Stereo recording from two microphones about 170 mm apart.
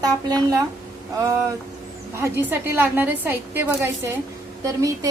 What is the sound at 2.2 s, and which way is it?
A woman's voice, 10° right (ahead or behind).